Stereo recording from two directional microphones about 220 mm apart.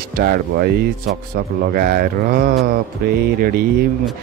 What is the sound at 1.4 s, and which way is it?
A man's voice, 40° right (ahead or behind).